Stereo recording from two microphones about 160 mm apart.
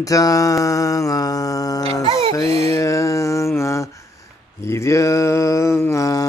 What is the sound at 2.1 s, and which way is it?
Music, 40° right (ahead or behind).